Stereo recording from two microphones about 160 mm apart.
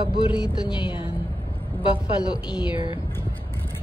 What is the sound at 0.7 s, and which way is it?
Music, 30° left (ahead or behind).